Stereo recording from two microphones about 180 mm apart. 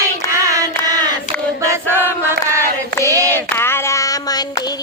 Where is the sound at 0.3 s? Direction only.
15° right (ahead or behind).